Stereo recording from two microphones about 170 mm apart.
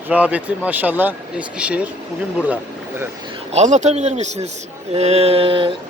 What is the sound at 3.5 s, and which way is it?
Speech, 40° right (ahead or behind).